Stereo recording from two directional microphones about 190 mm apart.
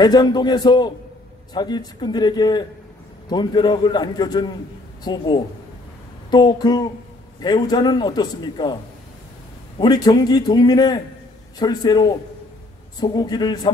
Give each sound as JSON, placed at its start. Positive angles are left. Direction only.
{"t": 0.0, "sound": "a man's voice", "side_deg": 20}
{"t": 9.8, "sound": "a man's voice", "side_deg": 20}